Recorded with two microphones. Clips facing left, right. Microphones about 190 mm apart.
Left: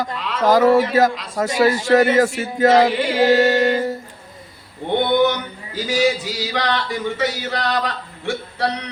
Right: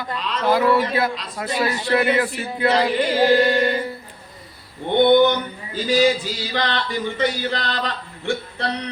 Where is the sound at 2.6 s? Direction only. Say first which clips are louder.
Left 5 dB; 45° left (ahead or behind).